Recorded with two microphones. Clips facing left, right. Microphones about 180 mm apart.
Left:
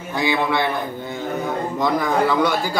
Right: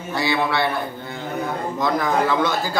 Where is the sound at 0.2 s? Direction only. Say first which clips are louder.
Left 1 dB; 15° left (ahead or behind).